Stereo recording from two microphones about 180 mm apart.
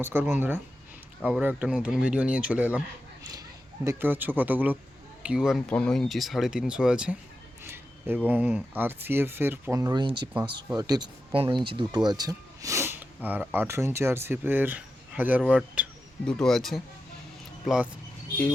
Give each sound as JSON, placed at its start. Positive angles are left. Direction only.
{"t": 0.0, "sound": "speech", "side_deg": -10}
{"t": 3.8, "sound": "speech", "side_deg": -10}
{"t": 16.2, "sound": "speech", "side_deg": 5}